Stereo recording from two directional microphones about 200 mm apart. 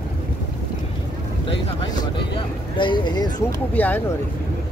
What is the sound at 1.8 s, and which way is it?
Vehicle, 25° left (ahead or behind).